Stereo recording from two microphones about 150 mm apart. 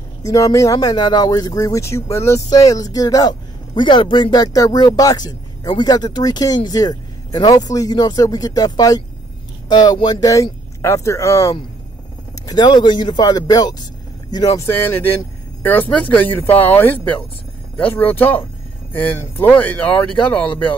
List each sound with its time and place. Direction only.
0.2 s speech: 20° left (ahead or behind)